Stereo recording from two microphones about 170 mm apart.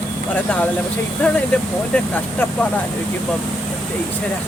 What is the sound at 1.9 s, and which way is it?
Speech, 10° left (ahead or behind).